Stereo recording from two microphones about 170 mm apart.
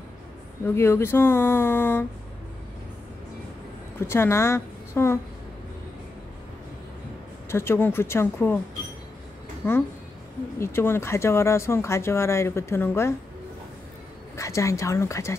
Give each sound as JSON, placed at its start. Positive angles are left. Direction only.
{"t": 0.7, "sound": "speech", "side_deg": 15}
{"t": 4.1, "sound": "a woman's voice", "side_deg": 15}
{"t": 7.4, "sound": "speech", "side_deg": 15}
{"t": 9.6, "sound": "speech", "side_deg": 10}
{"t": 14.3, "sound": "speech", "side_deg": 15}